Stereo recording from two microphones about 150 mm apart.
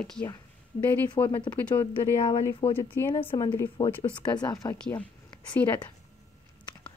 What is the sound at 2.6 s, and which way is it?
Speech, 40° left (ahead or behind).